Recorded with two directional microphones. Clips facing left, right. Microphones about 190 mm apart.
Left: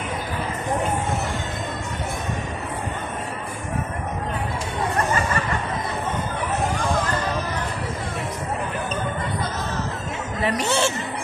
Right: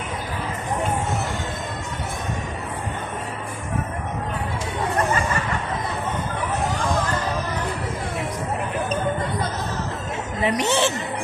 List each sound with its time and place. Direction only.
10.4 s speech: 15° right (ahead or behind)